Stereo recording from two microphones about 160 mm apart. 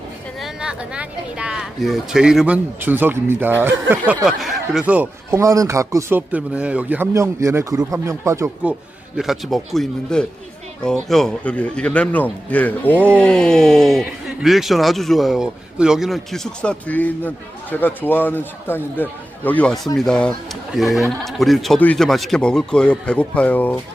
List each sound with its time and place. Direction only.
0.3 s speech: 5° right (ahead or behind)
5.4 s speech: 20° right (ahead or behind)
9.1 s a man's voice: centre (ahead or behind)